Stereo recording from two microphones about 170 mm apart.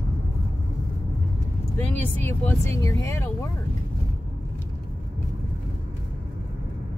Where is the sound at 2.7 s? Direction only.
20° left (ahead or behind).